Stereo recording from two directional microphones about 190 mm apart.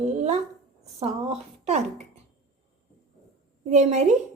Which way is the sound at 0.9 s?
35° right (ahead or behind).